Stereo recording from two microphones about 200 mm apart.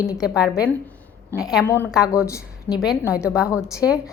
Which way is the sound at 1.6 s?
10° left (ahead or behind).